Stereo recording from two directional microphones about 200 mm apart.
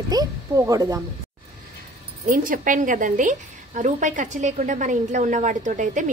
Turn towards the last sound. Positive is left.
turn(degrees=-40)  # may be behind; listen again after turning